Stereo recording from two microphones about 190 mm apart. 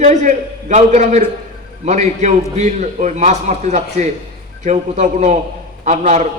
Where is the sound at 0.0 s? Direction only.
35° right (ahead or behind).